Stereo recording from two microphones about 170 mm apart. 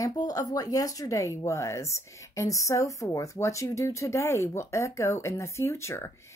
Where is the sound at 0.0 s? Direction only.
20° left (ahead or behind).